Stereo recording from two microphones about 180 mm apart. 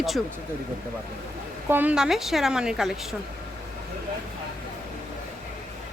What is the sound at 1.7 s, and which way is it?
Speech, 10° right (ahead or behind).